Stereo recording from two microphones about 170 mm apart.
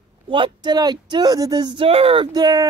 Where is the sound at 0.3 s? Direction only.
30° right (ahead or behind).